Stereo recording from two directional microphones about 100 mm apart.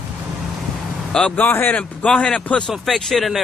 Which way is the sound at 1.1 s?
10° left (ahead or behind).